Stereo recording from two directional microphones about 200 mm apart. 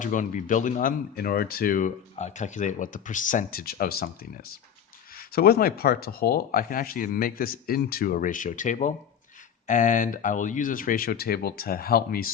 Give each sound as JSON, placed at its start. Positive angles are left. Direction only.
{"t": 0.0, "sound": "speech", "side_deg": 40}